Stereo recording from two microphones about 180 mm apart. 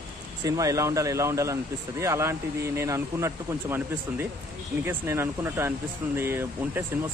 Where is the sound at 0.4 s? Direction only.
20° right (ahead or behind).